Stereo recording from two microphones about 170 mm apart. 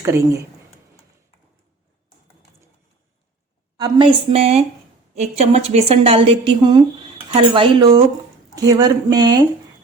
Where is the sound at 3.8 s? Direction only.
30° right (ahead or behind).